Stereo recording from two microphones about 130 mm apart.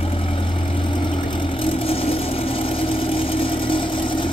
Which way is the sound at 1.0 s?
40° left (ahead or behind).